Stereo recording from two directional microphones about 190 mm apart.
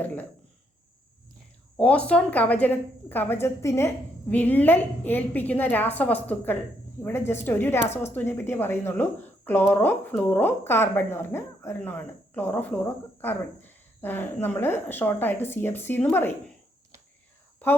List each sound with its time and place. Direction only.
0.0 s a woman's voice: 10° left (ahead or behind)
1.7 s a woman's voice: 5° left (ahead or behind)